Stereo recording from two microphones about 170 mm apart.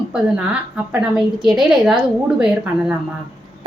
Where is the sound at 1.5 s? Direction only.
Centre (ahead or behind).